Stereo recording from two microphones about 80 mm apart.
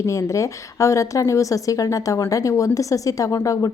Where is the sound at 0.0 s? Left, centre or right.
Left.